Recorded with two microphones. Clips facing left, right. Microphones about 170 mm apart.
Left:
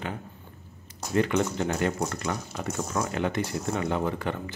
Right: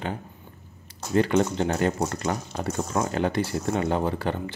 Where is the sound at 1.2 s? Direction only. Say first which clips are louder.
Right 3 dB; 30° right (ahead or behind).